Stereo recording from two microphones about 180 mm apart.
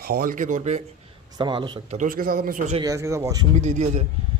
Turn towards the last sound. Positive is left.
turn(degrees=-40)  # may be behind; listen again after turning